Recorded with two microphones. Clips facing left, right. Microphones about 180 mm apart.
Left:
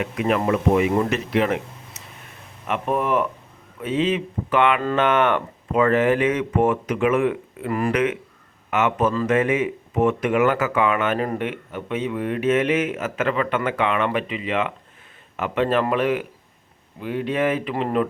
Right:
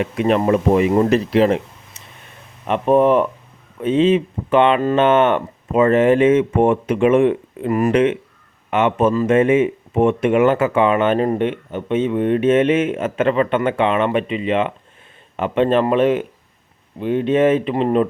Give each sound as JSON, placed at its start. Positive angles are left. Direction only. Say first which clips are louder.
{"t": 0.0, "sound": "speech", "louder": "right 5 dB", "side_deg": -30}
{"t": 2.6, "sound": "speech", "louder": "right 9 dB", "side_deg": -30}